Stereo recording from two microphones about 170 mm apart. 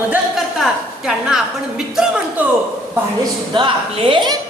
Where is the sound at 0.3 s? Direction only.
Centre (ahead or behind).